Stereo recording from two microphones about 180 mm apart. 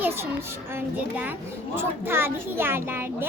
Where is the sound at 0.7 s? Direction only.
10° right (ahead or behind).